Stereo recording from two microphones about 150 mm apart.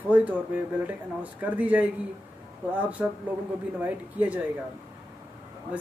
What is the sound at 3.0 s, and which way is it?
A woman's voice, 10° right (ahead or behind).